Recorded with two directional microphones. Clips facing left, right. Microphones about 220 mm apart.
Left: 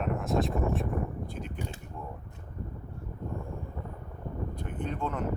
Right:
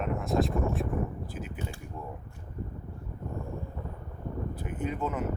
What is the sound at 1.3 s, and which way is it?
Mechanisms, 5° right (ahead or behind).